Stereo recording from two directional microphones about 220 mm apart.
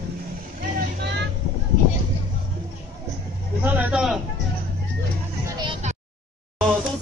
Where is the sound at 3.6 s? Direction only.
5° right (ahead or behind).